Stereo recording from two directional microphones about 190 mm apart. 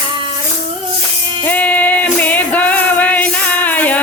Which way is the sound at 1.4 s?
10° left (ahead or behind).